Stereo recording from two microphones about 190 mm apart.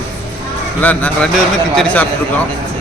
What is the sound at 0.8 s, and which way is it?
Speech, 10° left (ahead or behind).